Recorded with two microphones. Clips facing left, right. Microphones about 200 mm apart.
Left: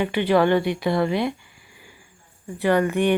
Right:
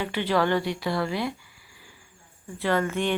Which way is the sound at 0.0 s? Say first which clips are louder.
Left 6 dB; 15° left (ahead or behind).